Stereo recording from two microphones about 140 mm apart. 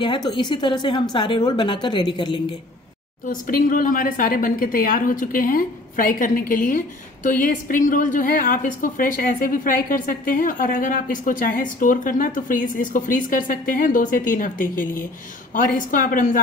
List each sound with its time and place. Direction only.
0.0 s a woman's voice: 35° left (ahead or behind)
3.3 s a woman's voice: 75° left (ahead or behind)